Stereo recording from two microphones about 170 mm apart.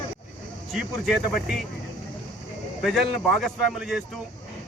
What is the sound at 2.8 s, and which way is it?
Speech, centre (ahead or behind).